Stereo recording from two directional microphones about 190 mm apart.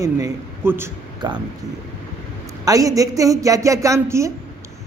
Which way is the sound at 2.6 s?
20° right (ahead or behind).